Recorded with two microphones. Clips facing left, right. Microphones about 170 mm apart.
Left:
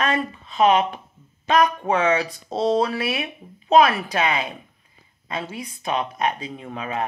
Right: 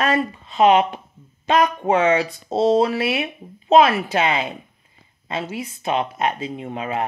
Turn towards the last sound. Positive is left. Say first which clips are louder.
# right 3 dB
turn(degrees=-30)  # may be behind; listen again after turning